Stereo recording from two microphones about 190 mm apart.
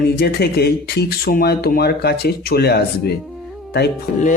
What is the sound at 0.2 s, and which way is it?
Speech, 60° left (ahead or behind).